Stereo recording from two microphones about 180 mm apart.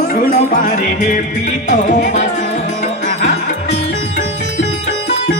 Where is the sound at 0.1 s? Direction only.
45° left (ahead or behind).